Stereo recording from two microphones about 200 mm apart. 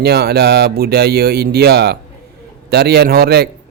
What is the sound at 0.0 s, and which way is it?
Speech, 50° right (ahead or behind).